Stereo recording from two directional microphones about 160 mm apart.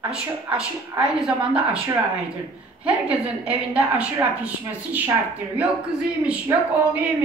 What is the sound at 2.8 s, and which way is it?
A woman's voice, 10° right (ahead or behind).